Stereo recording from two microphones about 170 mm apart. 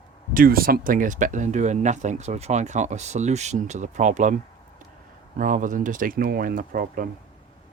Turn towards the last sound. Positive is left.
turn(degrees=-55)  # may be behind; listen again after turning